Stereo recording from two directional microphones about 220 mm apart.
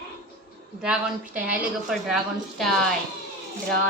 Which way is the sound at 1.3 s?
5° right (ahead or behind).